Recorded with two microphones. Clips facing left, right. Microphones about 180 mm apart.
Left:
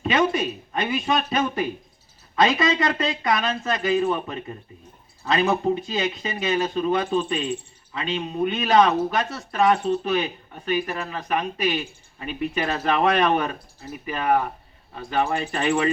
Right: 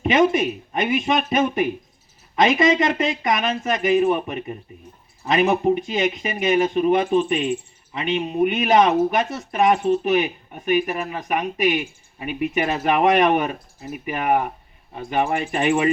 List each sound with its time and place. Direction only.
0.0 s speech: 20° right (ahead or behind)